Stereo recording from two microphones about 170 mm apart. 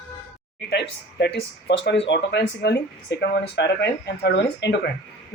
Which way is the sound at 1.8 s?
90° left.